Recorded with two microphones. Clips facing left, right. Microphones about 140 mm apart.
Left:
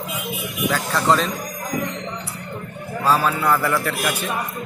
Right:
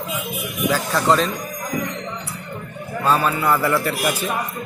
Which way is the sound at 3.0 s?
5° left (ahead or behind).